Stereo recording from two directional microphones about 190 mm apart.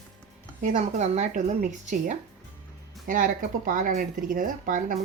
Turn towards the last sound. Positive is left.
turn(degrees=-45)  # may be behind; listen again after turning